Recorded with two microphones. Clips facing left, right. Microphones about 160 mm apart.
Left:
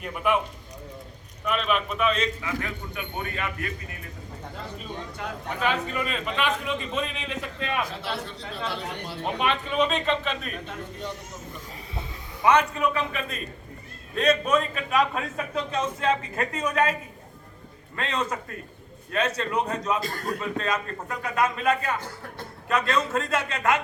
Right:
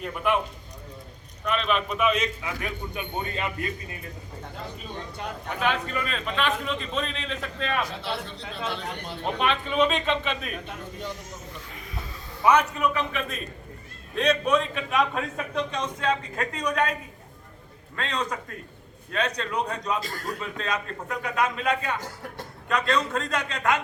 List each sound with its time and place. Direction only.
0.0 s a man's voice: 5° left (ahead or behind)
1.5 s a man's voice: 5° left (ahead or behind)
2.0 s a man's voice: 10° right (ahead or behind)
5.5 s a man's voice: 5° left (ahead or behind)
12.5 s a man's voice: 5° right (ahead or behind)
14.2 s a man's voice: centre (ahead or behind)
17.9 s a man's voice: 5° left (ahead or behind)